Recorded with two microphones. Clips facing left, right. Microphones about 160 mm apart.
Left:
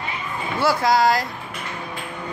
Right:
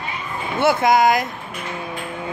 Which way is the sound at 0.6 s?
20° right (ahead or behind).